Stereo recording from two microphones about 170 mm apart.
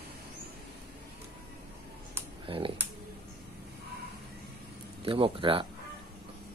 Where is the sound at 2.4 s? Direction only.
30° right (ahead or behind).